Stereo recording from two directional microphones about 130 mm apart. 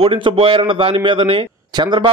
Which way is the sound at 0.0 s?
45° right (ahead or behind).